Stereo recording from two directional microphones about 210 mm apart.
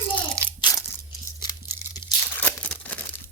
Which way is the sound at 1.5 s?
15° left (ahead or behind).